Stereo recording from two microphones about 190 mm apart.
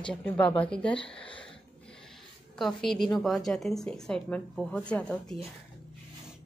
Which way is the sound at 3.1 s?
Centre (ahead or behind).